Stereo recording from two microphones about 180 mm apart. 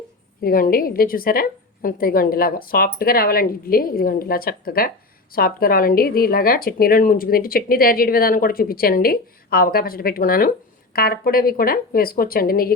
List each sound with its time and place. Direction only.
0.4 s a woman's voice: 55° left (ahead or behind)